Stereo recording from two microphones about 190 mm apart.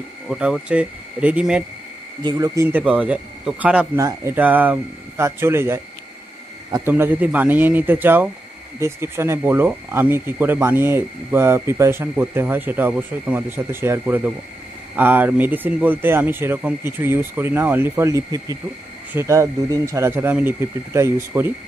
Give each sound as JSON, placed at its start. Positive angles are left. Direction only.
{"t": 0.3, "sound": "speech", "side_deg": -5}
{"t": 2.2, "sound": "speech", "side_deg": -20}